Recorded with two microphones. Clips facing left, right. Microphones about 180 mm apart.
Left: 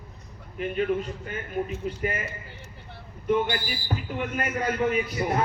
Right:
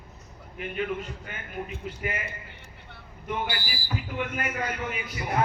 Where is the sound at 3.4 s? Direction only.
5° right (ahead or behind).